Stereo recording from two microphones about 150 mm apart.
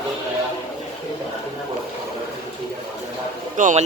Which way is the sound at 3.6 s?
60° right (ahead or behind).